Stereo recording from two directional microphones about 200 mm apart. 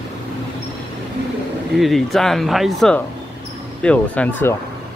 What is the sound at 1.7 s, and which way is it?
Speech, centre (ahead or behind).